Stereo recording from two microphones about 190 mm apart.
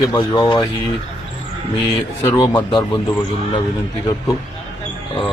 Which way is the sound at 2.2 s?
20° left (ahead or behind).